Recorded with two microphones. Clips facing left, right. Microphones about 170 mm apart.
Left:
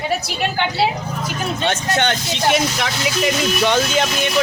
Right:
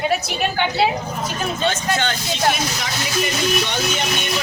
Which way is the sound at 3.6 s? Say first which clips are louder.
Left 6 dB; 90° left.